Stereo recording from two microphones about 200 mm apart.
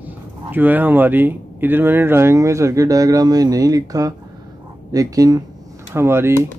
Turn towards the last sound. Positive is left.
turn(degrees=-15)  # may be behind; listen again after turning